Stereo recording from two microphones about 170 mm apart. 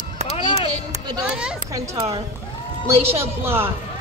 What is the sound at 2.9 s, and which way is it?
Speech, 35° right (ahead or behind).